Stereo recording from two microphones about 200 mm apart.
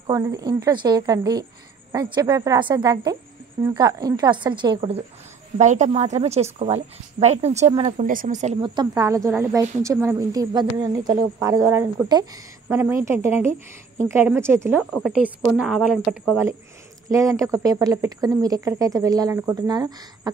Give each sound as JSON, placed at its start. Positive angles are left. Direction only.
{"t": 0.0, "sound": "a woman's voice", "side_deg": -15}
{"t": 8.5, "sound": "speech", "side_deg": -20}
{"t": 17.1, "sound": "speech", "side_deg": -15}